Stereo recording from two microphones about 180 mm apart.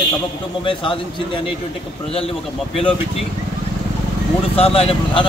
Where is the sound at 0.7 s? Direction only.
30° left (ahead or behind).